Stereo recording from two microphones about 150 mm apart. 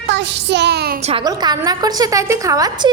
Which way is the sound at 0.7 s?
90° right.